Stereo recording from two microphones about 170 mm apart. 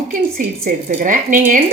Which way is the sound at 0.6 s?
50° right (ahead or behind).